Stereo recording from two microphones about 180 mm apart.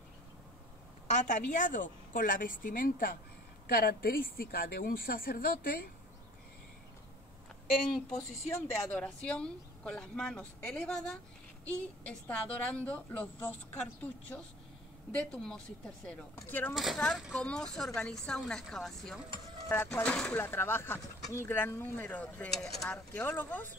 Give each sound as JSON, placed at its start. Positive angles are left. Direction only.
{"t": 1.1, "sound": "a woman's voice", "side_deg": 45}
{"t": 8.2, "sound": "a woman's voice", "side_deg": 15}
{"t": 15.1, "sound": "a woman's voice", "side_deg": 5}
{"t": 16.7, "sound": "speech", "side_deg": 0}
{"t": 19.7, "sound": "a woman's voice", "side_deg": 10}